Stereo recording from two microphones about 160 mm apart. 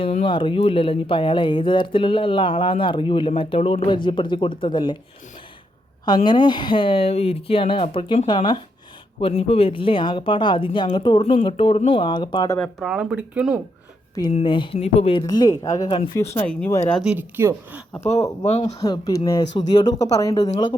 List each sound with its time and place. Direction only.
0.3 s speech: 30° left (ahead or behind)
6.2 s speech: 30° left (ahead or behind)
12.8 s speech: 5° right (ahead or behind)
14.3 s speech: 30° left (ahead or behind); by 16.7 s 10° left (ahead or behind)
16.9 s speech: 5° right (ahead or behind)
18.4 s speech: 45° left (ahead or behind)
18.8 s speech: 20° left (ahead or behind)